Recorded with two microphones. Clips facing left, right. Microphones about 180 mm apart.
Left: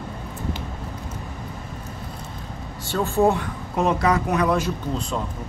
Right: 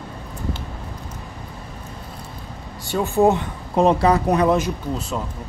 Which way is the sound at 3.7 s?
30° right (ahead or behind).